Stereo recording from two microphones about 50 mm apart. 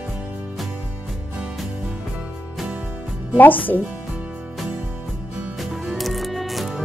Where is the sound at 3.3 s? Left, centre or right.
Left.